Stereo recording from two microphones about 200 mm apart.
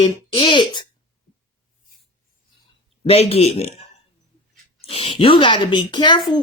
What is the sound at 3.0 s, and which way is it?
Speech, 30° left (ahead or behind).